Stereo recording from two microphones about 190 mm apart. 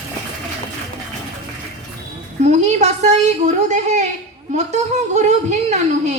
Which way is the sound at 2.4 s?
35° right (ahead or behind).